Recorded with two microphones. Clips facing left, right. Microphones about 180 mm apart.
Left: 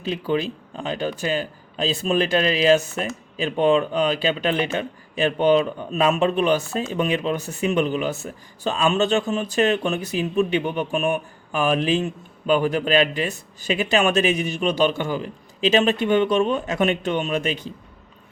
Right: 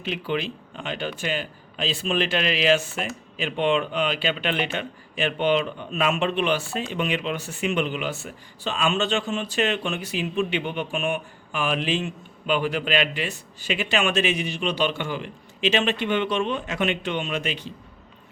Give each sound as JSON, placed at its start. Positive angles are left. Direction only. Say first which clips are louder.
{"t": 0.0, "sound": "speech", "louder": "left 4 dB", "side_deg": 35}